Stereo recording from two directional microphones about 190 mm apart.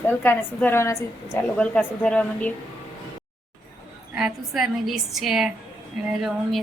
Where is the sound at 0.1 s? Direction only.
10° left (ahead or behind).